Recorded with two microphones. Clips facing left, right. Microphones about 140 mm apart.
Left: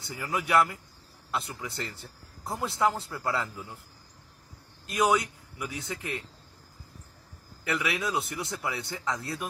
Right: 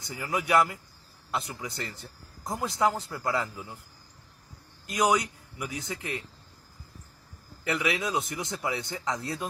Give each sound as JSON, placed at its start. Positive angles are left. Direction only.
{"t": 0.1, "sound": "speech", "side_deg": -20}
{"t": 4.8, "sound": "a man's voice", "side_deg": -20}
{"t": 7.6, "sound": "speech", "side_deg": -20}